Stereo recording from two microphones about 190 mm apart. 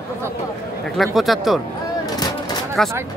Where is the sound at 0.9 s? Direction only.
Centre (ahead or behind).